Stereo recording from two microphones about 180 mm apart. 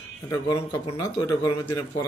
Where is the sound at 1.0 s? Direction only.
20° left (ahead or behind).